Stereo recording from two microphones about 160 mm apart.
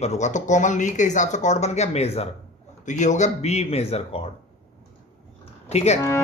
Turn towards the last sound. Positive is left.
turn(degrees=45)  # may be behind; listen again after turning